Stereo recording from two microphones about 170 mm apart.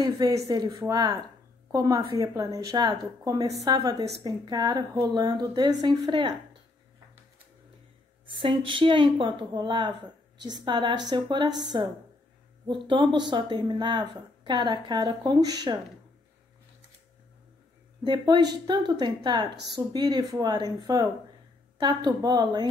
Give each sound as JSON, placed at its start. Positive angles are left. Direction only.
{"t": 0.0, "sound": "speech", "side_deg": -20}
{"t": 8.4, "sound": "speech", "side_deg": -30}
{"t": 18.0, "sound": "speech", "side_deg": -25}